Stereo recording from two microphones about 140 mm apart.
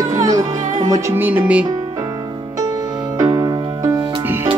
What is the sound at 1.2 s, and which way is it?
Speech, 10° right (ahead or behind).